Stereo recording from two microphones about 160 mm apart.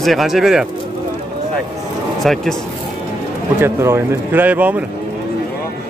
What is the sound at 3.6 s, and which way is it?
Speech, 15° right (ahead or behind).